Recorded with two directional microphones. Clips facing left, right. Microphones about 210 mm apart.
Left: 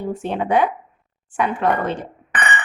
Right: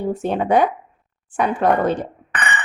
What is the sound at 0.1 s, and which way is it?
A woman's voice, 40° right (ahead or behind).